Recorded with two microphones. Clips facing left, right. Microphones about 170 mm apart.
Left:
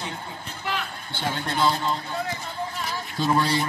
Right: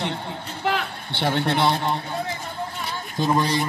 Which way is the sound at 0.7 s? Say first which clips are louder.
Right 6 dB; 65° right (ahead or behind).